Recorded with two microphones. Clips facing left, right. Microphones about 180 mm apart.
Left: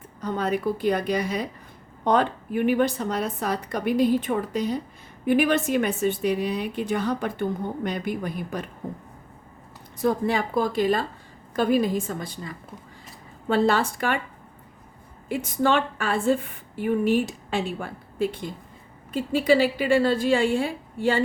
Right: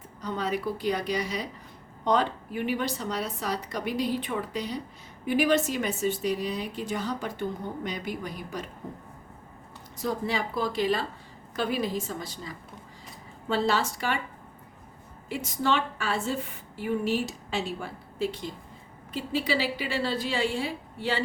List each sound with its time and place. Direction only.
0.2 s a woman's voice: 50° left (ahead or behind)
10.0 s a woman's voice: 55° left (ahead or behind)
15.3 s a woman's voice: 50° left (ahead or behind)